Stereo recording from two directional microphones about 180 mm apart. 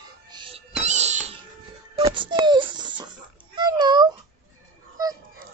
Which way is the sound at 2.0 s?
25° right (ahead or behind).